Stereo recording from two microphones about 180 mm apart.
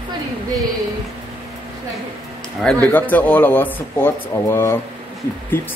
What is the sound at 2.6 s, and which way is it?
A man's voice, 10° left (ahead or behind).